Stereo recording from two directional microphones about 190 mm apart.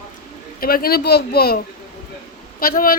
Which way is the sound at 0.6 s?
50° left (ahead or behind).